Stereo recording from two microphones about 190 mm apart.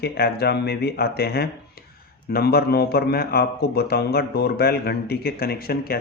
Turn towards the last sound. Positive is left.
turn(degrees=55)  # may be behind; listen again after turning